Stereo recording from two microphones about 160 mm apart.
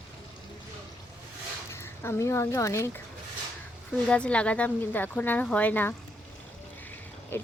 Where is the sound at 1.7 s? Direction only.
15° left (ahead or behind).